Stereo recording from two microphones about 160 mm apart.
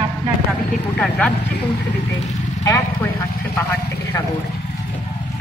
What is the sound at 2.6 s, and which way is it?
Speech, 20° left (ahead or behind).